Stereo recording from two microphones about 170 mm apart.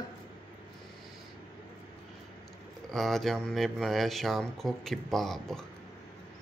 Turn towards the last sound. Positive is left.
turn(degrees=0)  # may be behind; listen again after turning